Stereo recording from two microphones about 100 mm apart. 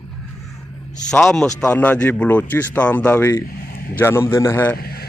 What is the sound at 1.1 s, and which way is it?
A man's voice, 5° left (ahead or behind).